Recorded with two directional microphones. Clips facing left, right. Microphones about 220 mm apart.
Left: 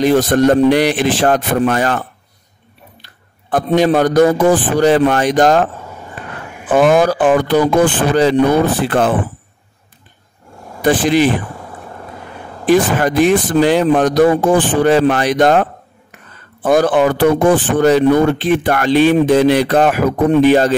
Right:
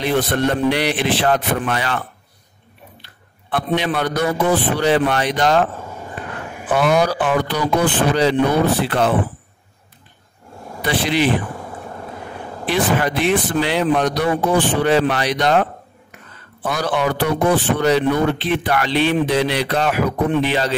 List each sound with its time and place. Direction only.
0.0 s a man's voice: 45° left (ahead or behind)
6.7 s speech: 50° left (ahead or behind)
10.8 s speech: 45° left (ahead or behind)
12.6 s speech: 45° left (ahead or behind)
16.6 s speech: 50° left (ahead or behind)